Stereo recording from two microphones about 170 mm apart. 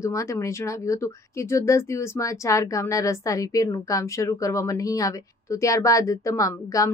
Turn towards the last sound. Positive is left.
turn(degrees=20)  # may be behind; listen again after turning